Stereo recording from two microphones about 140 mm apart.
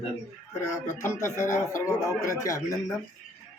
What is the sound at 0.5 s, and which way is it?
Speech, 20° left (ahead or behind).